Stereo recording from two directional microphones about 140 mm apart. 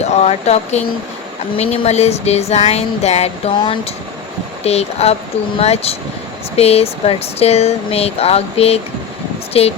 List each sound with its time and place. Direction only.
0.0 s a sound: 50° left (ahead or behind)
1.5 s speech: 45° left (ahead or behind)
4.6 s speech: 50° left (ahead or behind)